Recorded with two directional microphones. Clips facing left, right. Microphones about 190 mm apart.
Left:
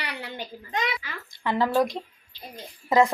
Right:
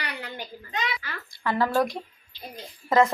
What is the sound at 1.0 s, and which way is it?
A woman's voice, 20° left (ahead or behind).